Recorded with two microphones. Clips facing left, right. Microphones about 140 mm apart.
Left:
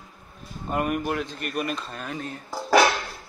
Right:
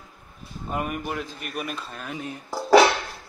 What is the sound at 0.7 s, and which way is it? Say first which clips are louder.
Speech: left 4 dB; centre (ahead or behind).